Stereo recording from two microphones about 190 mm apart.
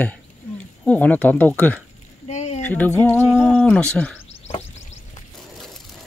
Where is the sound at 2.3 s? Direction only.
35° left (ahead or behind).